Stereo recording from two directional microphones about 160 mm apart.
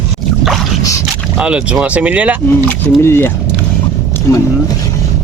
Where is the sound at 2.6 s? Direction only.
15° left (ahead or behind).